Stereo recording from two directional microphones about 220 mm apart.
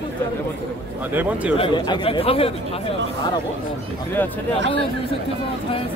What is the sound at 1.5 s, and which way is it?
Speech, 20° left (ahead or behind).